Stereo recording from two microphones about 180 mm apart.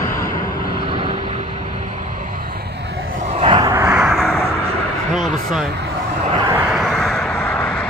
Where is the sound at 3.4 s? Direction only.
25° right (ahead or behind).